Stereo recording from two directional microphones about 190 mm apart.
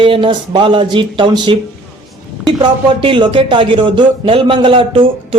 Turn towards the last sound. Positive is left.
turn(degrees=-30)  # may be behind; listen again after turning